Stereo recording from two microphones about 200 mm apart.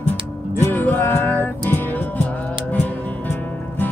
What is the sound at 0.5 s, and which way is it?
Music, 10° left (ahead or behind).